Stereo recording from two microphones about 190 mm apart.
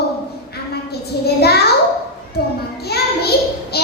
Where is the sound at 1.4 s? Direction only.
55° left (ahead or behind).